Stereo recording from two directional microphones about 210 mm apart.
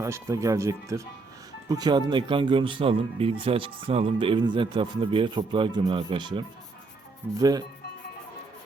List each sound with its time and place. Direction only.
0.0 s speech: 15° right (ahead or behind)